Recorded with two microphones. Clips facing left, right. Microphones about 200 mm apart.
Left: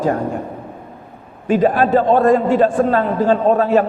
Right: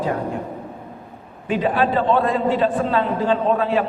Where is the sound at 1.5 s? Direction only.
45° left (ahead or behind).